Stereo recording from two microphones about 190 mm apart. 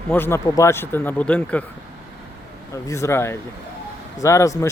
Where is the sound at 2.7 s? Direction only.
15° left (ahead or behind).